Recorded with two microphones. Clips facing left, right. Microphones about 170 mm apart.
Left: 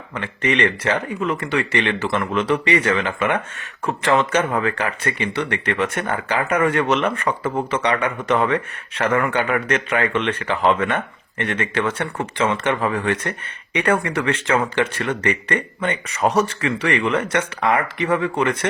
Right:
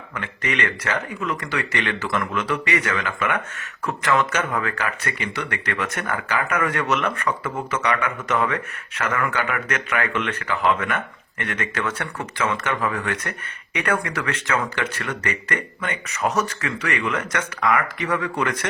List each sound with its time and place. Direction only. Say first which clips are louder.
0.1 s speech: left 6 dB; 30° left (ahead or behind)